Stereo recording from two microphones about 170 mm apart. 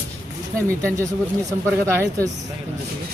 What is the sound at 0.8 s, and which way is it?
Speech, 15° right (ahead or behind).